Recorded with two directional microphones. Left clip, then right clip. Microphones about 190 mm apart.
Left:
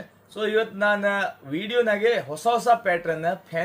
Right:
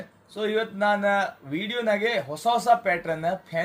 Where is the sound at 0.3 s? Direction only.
15° left (ahead or behind).